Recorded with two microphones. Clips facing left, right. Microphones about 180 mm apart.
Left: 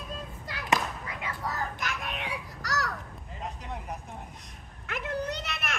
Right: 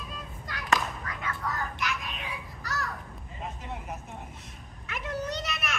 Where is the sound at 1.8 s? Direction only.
50° left (ahead or behind).